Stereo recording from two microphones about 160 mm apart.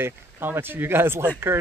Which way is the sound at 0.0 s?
15° right (ahead or behind).